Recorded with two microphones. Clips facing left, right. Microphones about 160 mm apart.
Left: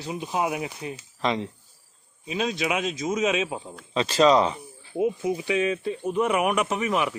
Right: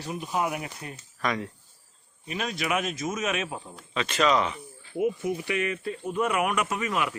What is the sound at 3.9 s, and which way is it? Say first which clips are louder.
Speech: left 5 dB; 30° left (ahead or behind).